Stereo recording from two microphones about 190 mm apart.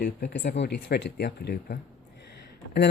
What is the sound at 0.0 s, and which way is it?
Speech, 60° left (ahead or behind).